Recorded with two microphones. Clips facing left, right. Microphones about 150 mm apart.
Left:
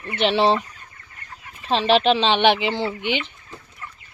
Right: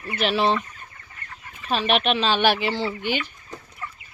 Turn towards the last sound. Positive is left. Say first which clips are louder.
# left 1 dB
turn(degrees=20)  # may be behind; listen again after turning